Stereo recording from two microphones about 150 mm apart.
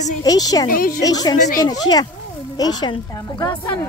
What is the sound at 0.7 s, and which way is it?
Speech, 70° left (ahead or behind).